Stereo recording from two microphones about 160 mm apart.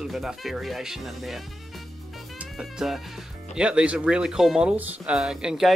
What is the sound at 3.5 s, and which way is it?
Speech, 5° right (ahead or behind).